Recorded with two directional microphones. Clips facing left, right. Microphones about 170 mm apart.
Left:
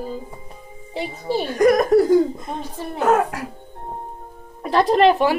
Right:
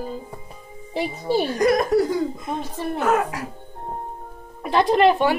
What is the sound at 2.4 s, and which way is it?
Speech, centre (ahead or behind).